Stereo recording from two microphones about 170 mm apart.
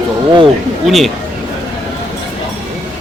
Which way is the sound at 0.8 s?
Centre (ahead or behind).